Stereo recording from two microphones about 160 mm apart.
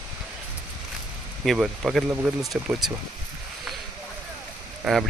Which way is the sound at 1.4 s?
Centre (ahead or behind).